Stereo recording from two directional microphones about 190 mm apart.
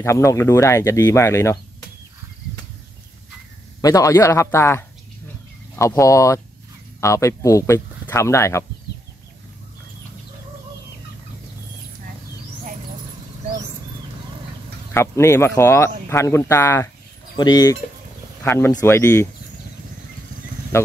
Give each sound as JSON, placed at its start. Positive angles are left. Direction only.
{"t": 0.0, "sound": "speech", "side_deg": 15}
{"t": 3.8, "sound": "speech", "side_deg": 15}
{"t": 14.9, "sound": "speech", "side_deg": 15}
{"t": 20.7, "sound": "speech", "side_deg": 15}